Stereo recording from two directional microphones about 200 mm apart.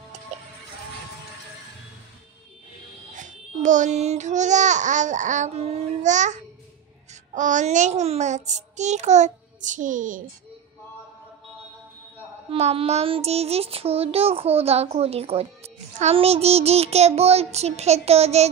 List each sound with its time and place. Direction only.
3.2 s speech: 40° right (ahead or behind)
12.4 s child singing: 30° right (ahead or behind)
16.0 s speech: 30° right (ahead or behind)